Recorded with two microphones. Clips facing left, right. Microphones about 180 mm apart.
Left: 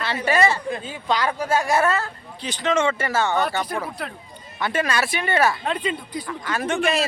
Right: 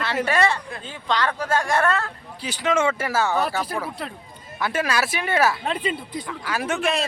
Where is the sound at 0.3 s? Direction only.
5° left (ahead or behind).